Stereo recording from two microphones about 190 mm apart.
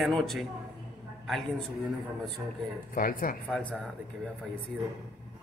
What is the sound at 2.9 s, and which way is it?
Speech, 50° left (ahead or behind).